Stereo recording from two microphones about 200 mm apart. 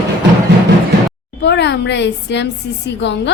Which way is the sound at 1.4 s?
60° left (ahead or behind).